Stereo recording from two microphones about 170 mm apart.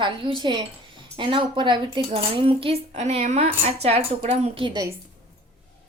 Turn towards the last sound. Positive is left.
turn(degrees=-30)  # may be behind; listen again after turning